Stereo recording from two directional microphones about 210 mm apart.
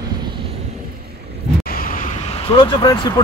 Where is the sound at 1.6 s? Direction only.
45° left (ahead or behind); by 3.2 s 20° left (ahead or behind).